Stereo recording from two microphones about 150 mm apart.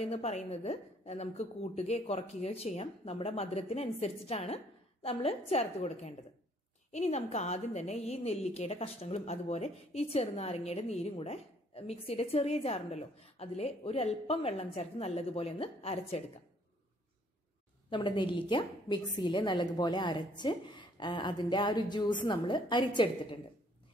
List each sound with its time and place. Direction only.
0.0 s a woman's voice: 45° left (ahead or behind)
17.8 s a woman's voice: 30° left (ahead or behind)